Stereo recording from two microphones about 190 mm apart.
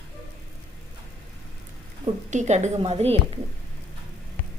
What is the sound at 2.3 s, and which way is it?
Speech, 40° right (ahead or behind).